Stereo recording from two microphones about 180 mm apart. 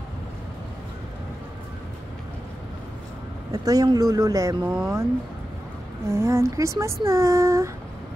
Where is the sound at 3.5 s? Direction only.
20° right (ahead or behind).